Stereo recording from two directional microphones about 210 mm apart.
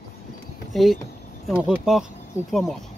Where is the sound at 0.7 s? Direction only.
Centre (ahead or behind).